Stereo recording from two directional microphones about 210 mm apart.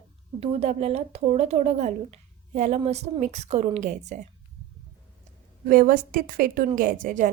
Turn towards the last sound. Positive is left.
turn(degrees=-40)  # may be behind; listen again after turning